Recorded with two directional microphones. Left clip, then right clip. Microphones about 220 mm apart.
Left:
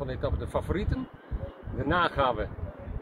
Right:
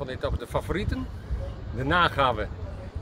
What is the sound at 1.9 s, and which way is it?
Speech, 20° right (ahead or behind).